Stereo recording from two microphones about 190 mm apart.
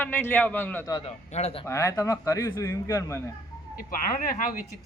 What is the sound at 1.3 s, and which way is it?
Speech, 35° left (ahead or behind).